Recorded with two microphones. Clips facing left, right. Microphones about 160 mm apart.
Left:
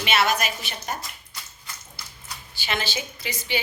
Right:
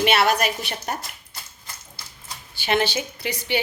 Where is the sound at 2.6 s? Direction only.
60° right (ahead or behind).